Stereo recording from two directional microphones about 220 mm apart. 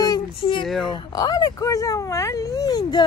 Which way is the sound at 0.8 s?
20° left (ahead or behind).